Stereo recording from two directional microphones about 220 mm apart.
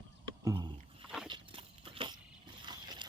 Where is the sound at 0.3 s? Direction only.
20° right (ahead or behind).